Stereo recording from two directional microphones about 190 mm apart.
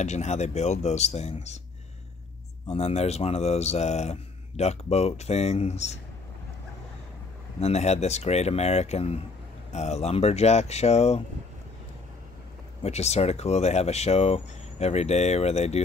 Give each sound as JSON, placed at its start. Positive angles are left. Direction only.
{"t": 0.0, "sound": "speech", "side_deg": 35}
{"t": 2.7, "sound": "speech", "side_deg": 35}
{"t": 7.6, "sound": "speech", "side_deg": 35}
{"t": 12.8, "sound": "speech", "side_deg": 35}